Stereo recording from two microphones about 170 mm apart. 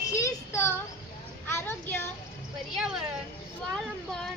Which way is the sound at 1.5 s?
10° left (ahead or behind).